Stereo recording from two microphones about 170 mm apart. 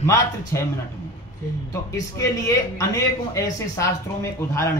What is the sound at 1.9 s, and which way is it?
A man's voice, 20° left (ahead or behind).